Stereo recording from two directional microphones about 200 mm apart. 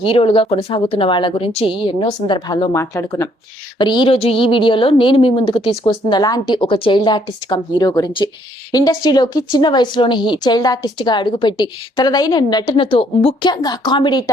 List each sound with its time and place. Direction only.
0.0 s a woman's voice: 25° left (ahead or behind)